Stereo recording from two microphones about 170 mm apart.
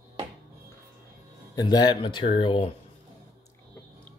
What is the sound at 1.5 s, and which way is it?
Speech, 25° left (ahead or behind).